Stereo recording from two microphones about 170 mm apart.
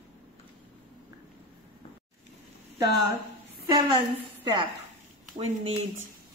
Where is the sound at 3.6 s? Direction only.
25° right (ahead or behind).